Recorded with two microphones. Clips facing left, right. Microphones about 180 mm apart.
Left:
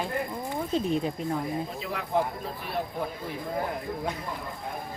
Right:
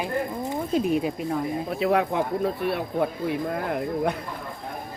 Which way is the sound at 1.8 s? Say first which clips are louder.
Right 8 dB; 65° right (ahead or behind).